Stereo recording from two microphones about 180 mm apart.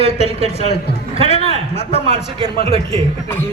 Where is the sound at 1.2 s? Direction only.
35° left (ahead or behind).